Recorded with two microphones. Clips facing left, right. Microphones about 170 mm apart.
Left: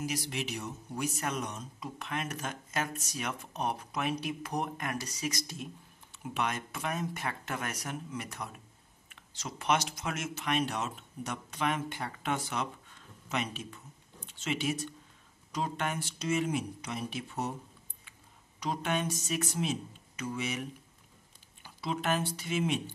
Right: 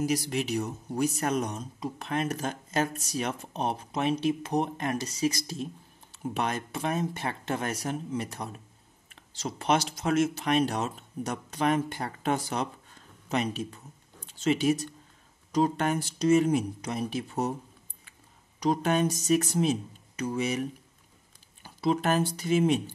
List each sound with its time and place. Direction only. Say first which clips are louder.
0.0 s a man's voice: right 7 dB; 40° right (ahead or behind)
18.6 s a man's voice: right 8 dB; 40° right (ahead or behind)
21.6 s a man's voice: right 7 dB; 40° right (ahead or behind)